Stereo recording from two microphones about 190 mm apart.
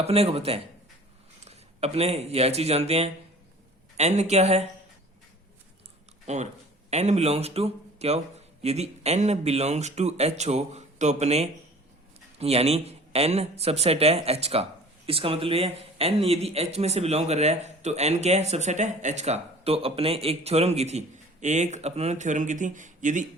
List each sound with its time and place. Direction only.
0.0 s speech: 35° right (ahead or behind)
6.2 s speech: 35° right (ahead or behind)